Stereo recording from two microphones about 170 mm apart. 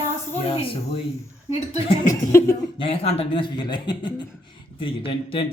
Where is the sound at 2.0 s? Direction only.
15° left (ahead or behind).